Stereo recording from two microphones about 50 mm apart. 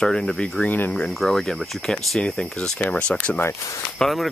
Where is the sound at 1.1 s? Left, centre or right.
Centre.